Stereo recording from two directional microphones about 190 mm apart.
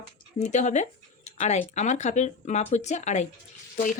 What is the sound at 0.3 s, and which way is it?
Speech, 40° left (ahead or behind).